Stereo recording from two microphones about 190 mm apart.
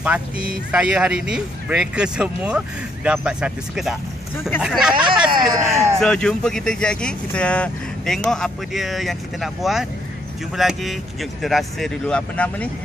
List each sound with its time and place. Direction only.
0.7 s speech: 5° right (ahead or behind)
4.9 s speech: 25° right (ahead or behind)
5.9 s speech: 5° left (ahead or behind)